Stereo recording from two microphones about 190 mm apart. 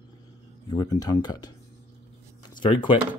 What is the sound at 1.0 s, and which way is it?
Speech, 20° left (ahead or behind).